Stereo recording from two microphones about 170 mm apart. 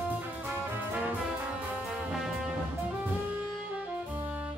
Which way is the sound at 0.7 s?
10° right (ahead or behind).